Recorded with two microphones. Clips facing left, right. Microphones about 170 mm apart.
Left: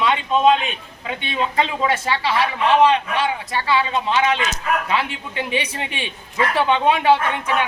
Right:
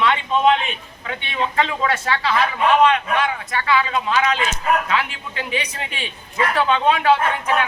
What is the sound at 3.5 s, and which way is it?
A man's voice, 25° left (ahead or behind).